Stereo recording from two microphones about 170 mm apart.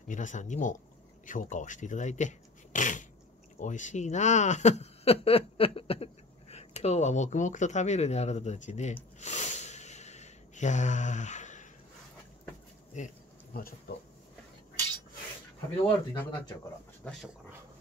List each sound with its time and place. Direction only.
0.1 s speech: 45° left (ahead or behind)
9.2 s a sound: 45° left (ahead or behind)
12.9 s insect: 50° left (ahead or behind)
16.1 s speech: 25° left (ahead or behind)
17.0 s speech: 5° left (ahead or behind)